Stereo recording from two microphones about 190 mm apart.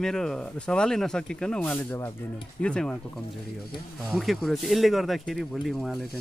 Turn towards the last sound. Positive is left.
turn(degrees=0)  # may be behind; listen again after turning